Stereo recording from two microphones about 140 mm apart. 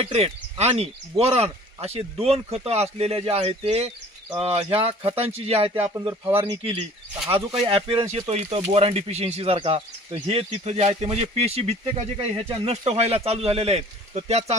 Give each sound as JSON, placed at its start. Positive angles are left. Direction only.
{"t": 0.0, "sound": "speech", "side_deg": -45}
{"t": 8.1, "sound": "speech", "side_deg": -50}